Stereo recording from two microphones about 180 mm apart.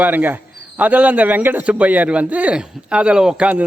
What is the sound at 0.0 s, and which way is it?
A man's voice, 10° right (ahead or behind).